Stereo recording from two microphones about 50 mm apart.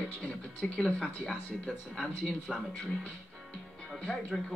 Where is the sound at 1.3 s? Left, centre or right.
Centre.